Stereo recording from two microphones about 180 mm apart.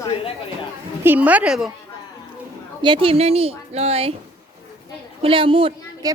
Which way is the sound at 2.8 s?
30° right (ahead or behind).